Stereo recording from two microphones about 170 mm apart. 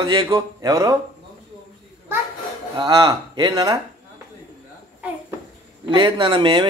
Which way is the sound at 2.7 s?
25° right (ahead or behind).